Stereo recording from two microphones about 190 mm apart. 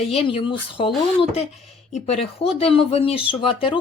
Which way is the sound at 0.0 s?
30° left (ahead or behind).